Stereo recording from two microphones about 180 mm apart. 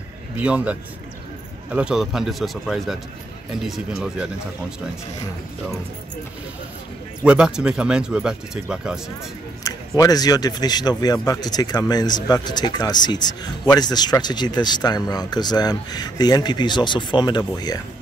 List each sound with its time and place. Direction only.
0.4 s a man's voice: 5° right (ahead or behind)
7.2 s speech: 5° right (ahead or behind)
9.6 s speech: 20° left (ahead or behind)